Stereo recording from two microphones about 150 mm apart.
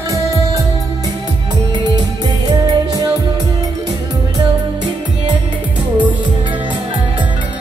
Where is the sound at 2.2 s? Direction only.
25° right (ahead or behind).